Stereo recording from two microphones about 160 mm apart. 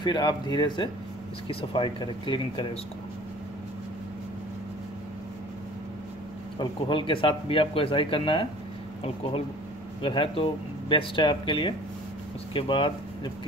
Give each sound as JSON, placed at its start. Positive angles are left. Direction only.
{"t": 0.0, "sound": "speech", "side_deg": 25}
{"t": 6.6, "sound": "speech", "side_deg": 30}